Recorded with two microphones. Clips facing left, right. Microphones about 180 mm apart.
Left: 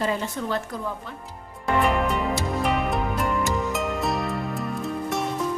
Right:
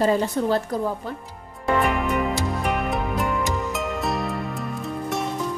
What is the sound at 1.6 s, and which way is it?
Music, centre (ahead or behind).